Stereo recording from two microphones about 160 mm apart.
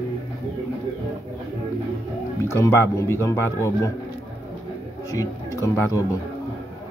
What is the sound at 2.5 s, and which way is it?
A man's voice, 15° left (ahead or behind).